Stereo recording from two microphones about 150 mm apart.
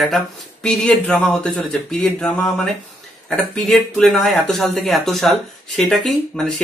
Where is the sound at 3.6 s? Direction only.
Centre (ahead or behind).